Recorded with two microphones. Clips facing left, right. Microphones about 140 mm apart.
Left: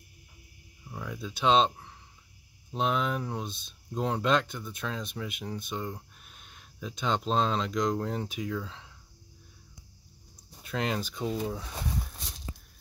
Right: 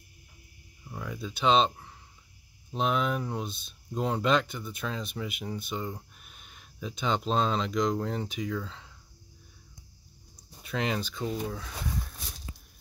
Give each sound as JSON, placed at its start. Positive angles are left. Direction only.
{"t": 0.8, "sound": "speech", "side_deg": 5}
{"t": 2.7, "sound": "speech", "side_deg": 0}
{"t": 10.6, "sound": "speech", "side_deg": 0}
{"t": 11.1, "sound": "speech", "side_deg": 15}